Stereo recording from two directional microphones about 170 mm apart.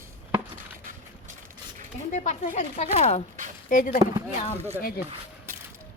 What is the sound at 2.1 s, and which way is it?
A woman's voice, 45° left (ahead or behind).